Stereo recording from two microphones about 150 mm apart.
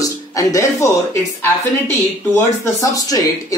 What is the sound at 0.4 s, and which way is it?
Speech, 20° left (ahead or behind).